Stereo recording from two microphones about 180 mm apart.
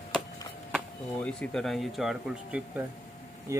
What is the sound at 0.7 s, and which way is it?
Speech, 5° left (ahead or behind).